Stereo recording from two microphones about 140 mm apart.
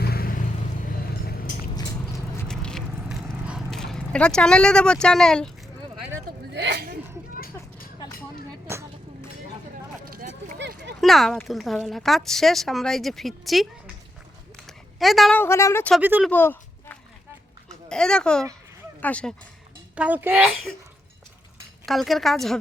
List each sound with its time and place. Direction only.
0.1 s vehicle: 90° left
1.7 s a sound: 30° left (ahead or behind)
2.5 s biting: 5° left (ahead or behind)
3.0 s vehicle: 5° right (ahead or behind)
8.6 s vehicle: 20° right (ahead or behind)
10.2 s a sound: 70° right (ahead or behind)
11.0 s speech: centre (ahead or behind)
14.7 s a sound: centre (ahead or behind)
15.4 s speech: 20° left (ahead or behind)
16.0 s speech: 10° right (ahead or behind)
16.3 s a sound: 15° left (ahead or behind)
17.8 s speech: 5° left (ahead or behind)
20.0 s speech: 10° right (ahead or behind)
21.8 s speech: centre (ahead or behind)